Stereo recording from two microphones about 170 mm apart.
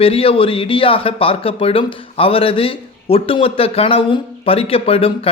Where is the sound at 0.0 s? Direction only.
35° left (ahead or behind).